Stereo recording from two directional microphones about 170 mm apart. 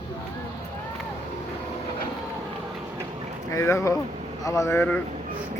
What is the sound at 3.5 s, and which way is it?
Speech, 15° left (ahead or behind).